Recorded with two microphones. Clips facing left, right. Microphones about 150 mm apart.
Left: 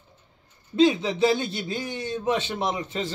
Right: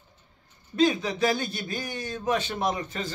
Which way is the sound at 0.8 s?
25° left (ahead or behind).